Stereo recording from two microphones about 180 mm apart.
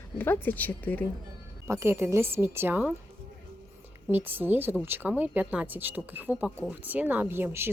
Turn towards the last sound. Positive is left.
turn(degrees=-10)  # may be behind; listen again after turning